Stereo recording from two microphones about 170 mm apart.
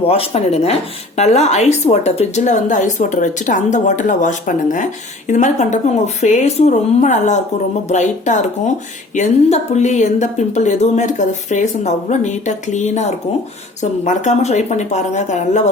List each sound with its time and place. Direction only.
0.1 s speech: 35° left (ahead or behind)